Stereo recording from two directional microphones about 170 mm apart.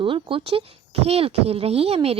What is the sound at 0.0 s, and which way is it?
Speech, 30° right (ahead or behind).